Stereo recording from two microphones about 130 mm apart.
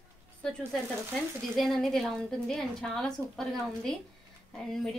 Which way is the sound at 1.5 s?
Centre (ahead or behind).